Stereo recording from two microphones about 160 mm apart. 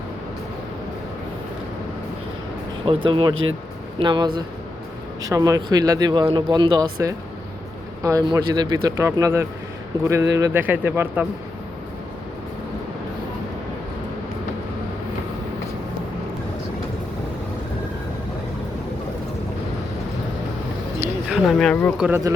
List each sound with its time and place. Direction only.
2.8 s speech: 30° right (ahead or behind); by 11.3 s 10° right (ahead or behind)
21.2 s speech: 5° right (ahead or behind)